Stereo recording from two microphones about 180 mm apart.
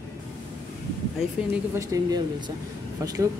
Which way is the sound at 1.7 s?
20° right (ahead or behind).